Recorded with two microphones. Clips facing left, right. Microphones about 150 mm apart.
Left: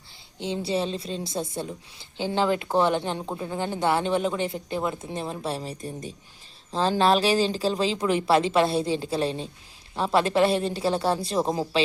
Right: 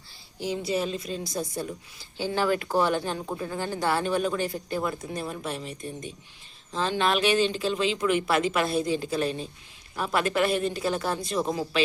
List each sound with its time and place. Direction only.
0.3 s a woman's voice: 25° left (ahead or behind)